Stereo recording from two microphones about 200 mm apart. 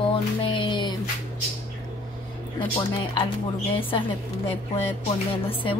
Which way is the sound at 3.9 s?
25° left (ahead or behind).